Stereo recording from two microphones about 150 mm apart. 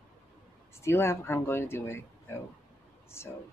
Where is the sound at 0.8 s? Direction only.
15° left (ahead or behind).